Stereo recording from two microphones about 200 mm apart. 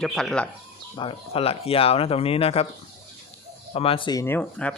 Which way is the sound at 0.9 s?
25° left (ahead or behind).